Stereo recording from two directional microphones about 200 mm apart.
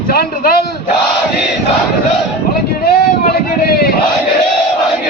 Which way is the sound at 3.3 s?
50° left (ahead or behind).